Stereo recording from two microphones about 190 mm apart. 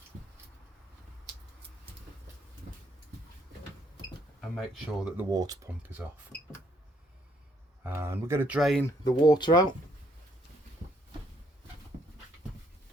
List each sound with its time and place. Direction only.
4.4 s speech: centre (ahead or behind)
5.3 s speech: 20° right (ahead or behind)
7.9 s speech: 10° right (ahead or behind)
8.8 s speech: 20° left (ahead or behind)